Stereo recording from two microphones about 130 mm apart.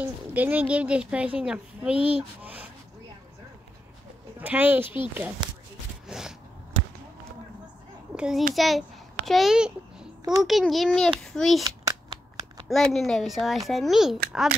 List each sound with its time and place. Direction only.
0.0 s speech: 15° right (ahead or behind)
4.4 s speech: 15° right (ahead or behind)
6.0 s a sound: 5° right (ahead or behind)
8.1 s a child's voice: 5° right (ahead or behind)
11.6 s a sound: 30° right (ahead or behind)
12.6 s a child's voice: centre (ahead or behind)